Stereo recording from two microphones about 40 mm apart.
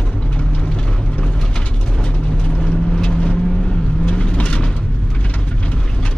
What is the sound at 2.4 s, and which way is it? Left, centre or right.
Vehicle, left.